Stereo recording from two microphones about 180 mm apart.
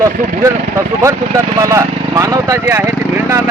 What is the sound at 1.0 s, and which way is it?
Speech, 15° right (ahead or behind).